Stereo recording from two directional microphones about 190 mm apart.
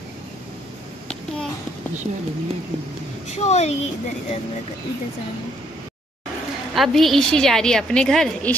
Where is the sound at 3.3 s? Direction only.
35° left (ahead or behind).